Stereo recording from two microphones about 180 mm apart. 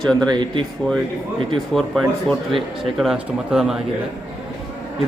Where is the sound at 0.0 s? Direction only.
5° left (ahead or behind).